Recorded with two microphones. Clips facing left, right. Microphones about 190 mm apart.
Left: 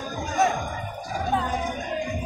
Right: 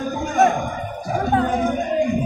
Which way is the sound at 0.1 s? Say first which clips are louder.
Right 6 dB; 55° right (ahead or behind).